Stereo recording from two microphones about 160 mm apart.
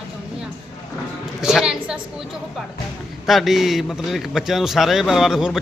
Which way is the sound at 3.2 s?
Centre (ahead or behind).